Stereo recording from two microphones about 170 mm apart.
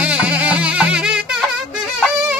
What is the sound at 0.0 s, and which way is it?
Music, 5° right (ahead or behind).